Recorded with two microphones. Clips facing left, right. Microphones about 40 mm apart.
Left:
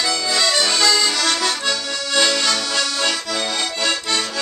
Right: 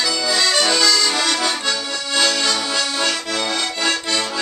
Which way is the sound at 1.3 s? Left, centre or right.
Centre.